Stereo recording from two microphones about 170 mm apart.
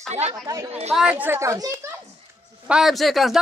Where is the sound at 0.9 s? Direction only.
10° right (ahead or behind).